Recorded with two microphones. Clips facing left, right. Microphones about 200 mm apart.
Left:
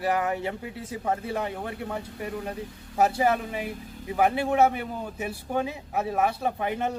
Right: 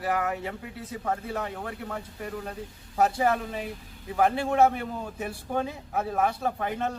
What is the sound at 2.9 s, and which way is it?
A man's voice, 10° left (ahead or behind).